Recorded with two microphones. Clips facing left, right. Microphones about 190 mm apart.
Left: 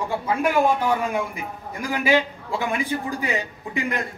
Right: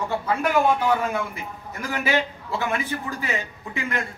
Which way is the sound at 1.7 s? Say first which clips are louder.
Left 4 dB; 15° left (ahead or behind).